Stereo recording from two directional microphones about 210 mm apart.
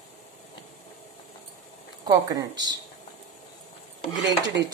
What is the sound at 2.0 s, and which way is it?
Speech, 15° right (ahead or behind).